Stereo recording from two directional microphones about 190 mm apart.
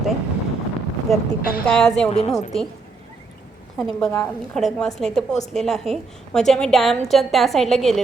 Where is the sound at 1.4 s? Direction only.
50° left (ahead or behind).